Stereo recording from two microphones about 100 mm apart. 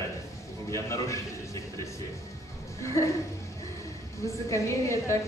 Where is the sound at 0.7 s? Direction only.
30° left (ahead or behind).